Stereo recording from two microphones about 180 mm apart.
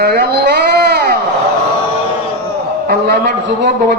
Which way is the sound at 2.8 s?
60° right (ahead or behind).